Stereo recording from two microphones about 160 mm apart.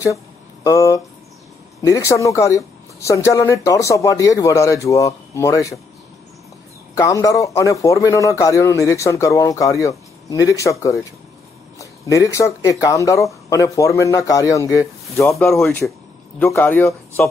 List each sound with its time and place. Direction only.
0.7 s a man's voice: 20° left (ahead or behind)
7.0 s a man's voice: 20° left (ahead or behind)
15.3 s speech: centre (ahead or behind)
16.3 s speech: 15° left (ahead or behind)